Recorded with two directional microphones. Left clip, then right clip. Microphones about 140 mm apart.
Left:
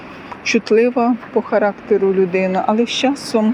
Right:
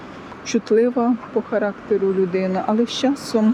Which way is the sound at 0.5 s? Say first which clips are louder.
Left 3 dB; 10° right (ahead or behind).